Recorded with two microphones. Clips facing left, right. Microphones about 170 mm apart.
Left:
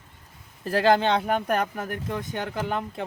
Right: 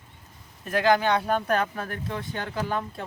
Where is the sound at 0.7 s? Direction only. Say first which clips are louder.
Left 1 dB; 30° left (ahead or behind).